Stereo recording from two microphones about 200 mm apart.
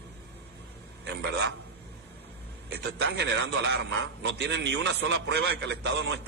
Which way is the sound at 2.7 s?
60° right (ahead or behind).